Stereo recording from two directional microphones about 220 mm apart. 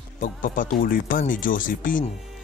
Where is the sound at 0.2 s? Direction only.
35° left (ahead or behind).